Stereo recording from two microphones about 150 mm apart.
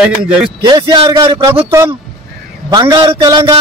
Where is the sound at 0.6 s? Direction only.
30° right (ahead or behind).